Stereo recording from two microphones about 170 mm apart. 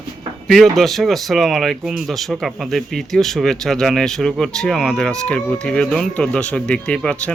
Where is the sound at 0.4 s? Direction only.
Centre (ahead or behind).